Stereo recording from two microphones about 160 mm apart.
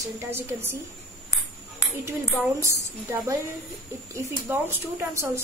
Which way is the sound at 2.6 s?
20° right (ahead or behind).